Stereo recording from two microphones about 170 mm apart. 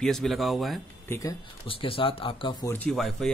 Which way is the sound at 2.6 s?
15° left (ahead or behind).